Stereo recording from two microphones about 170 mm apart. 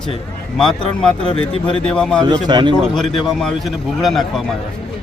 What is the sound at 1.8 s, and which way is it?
Speech, 5° left (ahead or behind).